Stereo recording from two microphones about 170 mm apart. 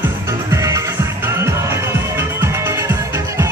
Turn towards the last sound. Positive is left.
turn(degrees=-15)  # may be behind; listen again after turning